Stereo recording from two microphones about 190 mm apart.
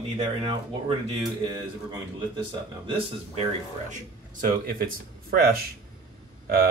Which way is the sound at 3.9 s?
45° right (ahead or behind).